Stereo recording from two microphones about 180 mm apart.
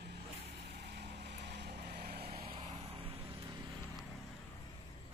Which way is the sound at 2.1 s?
35° right (ahead or behind).